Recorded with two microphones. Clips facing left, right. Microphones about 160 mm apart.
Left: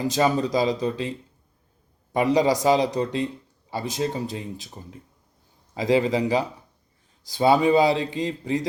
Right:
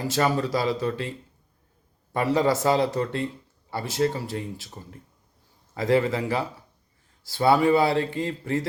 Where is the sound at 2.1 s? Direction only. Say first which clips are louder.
Left 2 dB; 15° left (ahead or behind).